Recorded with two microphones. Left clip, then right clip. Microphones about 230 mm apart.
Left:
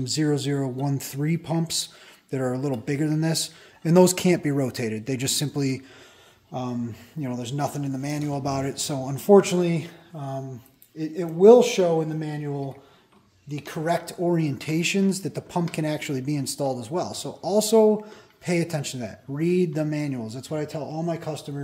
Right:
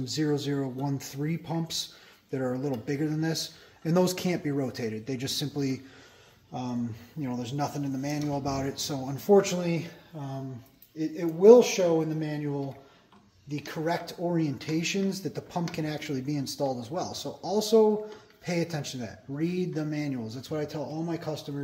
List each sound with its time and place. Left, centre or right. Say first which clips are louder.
0.0 s speech: left 4 dB; left
13.5 s speech: left 5 dB; left